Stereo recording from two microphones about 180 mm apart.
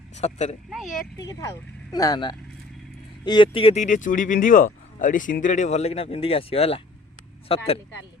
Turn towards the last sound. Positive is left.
turn(degrees=35)  # may be behind; listen again after turning